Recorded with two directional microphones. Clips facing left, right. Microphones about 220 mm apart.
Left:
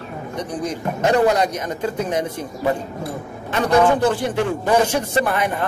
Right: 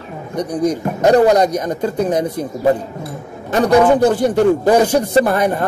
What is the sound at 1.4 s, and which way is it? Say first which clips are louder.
Speech: right 5 dB; 40° right (ahead or behind).